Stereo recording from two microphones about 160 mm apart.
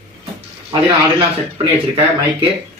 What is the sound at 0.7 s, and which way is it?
Speech, 25° right (ahead or behind).